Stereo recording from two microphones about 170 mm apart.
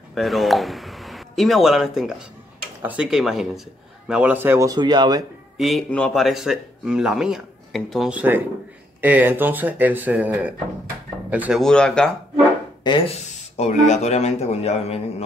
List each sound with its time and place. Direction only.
0.1 s a sound: centre (ahead or behind)
2.8 s speech: 10° right (ahead or behind); by 5.2 s 25° right (ahead or behind)
5.6 s speech: centre (ahead or behind)
11.6 s speech: 5° left (ahead or behind)
12.8 s speech: 30° left (ahead or behind)
13.2 s speech: 45° left (ahead or behind)